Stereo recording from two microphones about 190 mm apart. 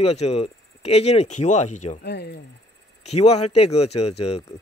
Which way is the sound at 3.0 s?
35° left (ahead or behind).